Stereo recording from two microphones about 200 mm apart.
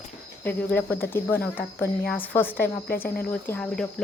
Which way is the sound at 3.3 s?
5° left (ahead or behind).